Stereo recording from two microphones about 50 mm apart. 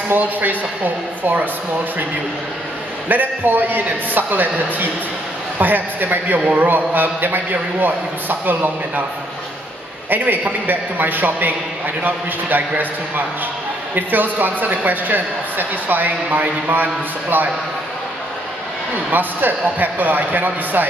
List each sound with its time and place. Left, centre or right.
0.1 s speech: right
3.1 s speech: right
10.0 s speech: right
19.0 s speech: right